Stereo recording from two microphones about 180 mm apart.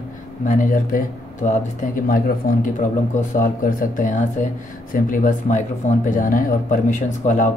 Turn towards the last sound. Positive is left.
turn(degrees=45)  # may be behind; listen again after turning